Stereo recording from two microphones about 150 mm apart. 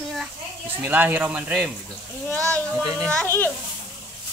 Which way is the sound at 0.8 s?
10° right (ahead or behind).